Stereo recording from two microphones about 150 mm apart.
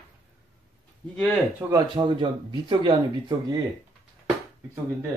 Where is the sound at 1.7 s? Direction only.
30° right (ahead or behind).